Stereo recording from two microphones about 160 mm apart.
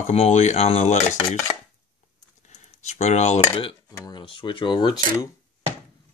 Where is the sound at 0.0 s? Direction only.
45° left (ahead or behind).